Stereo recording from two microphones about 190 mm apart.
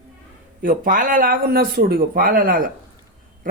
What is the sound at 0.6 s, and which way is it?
Speech, 45° right (ahead or behind).